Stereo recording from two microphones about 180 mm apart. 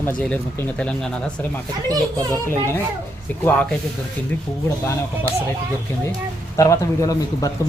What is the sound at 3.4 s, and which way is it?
Speech, 5° left (ahead or behind).